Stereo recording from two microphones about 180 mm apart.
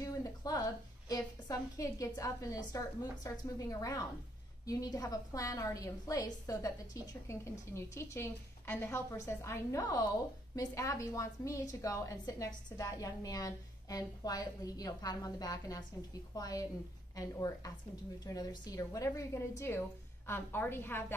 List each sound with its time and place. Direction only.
0.0 s a woman's voice: 20° left (ahead or behind)